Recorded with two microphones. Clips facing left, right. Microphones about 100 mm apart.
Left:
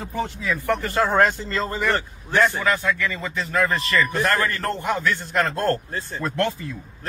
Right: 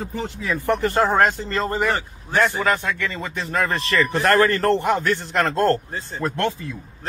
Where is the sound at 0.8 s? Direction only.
40° right (ahead or behind).